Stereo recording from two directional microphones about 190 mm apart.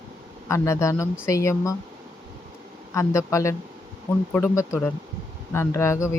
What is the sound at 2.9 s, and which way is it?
Speech, 15° left (ahead or behind).